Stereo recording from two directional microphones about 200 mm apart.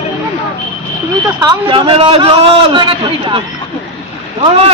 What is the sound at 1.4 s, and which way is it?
A man's voice, 25° right (ahead or behind).